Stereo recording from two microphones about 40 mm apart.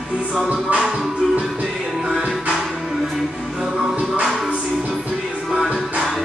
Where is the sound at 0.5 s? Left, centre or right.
Right.